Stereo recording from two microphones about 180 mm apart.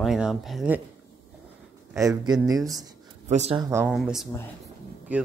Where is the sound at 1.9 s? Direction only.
20° right (ahead or behind).